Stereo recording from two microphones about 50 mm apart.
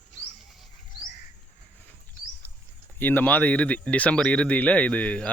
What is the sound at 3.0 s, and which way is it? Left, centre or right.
Speech, left.